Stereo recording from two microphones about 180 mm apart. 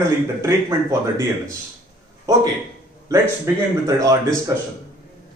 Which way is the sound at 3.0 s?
15° right (ahead or behind).